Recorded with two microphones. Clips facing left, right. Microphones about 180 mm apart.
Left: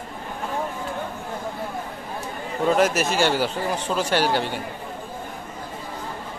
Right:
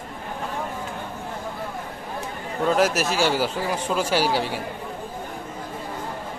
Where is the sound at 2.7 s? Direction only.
Centre (ahead or behind).